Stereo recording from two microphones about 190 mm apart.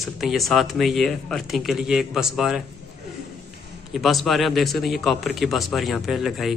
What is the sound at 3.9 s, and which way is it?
Speech, centre (ahead or behind).